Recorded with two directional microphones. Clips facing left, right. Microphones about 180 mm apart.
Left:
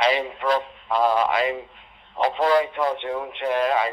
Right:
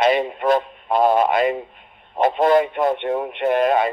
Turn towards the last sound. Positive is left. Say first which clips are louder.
# right 4 dB
turn(degrees=-50)  # may be behind; listen again after turning